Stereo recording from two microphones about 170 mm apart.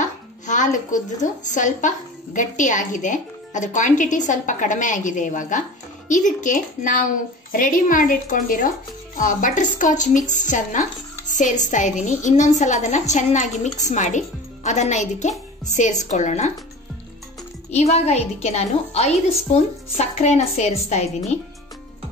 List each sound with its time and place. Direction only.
0.0 s speech: 45° left (ahead or behind)
17.6 s a woman's voice: 40° left (ahead or behind)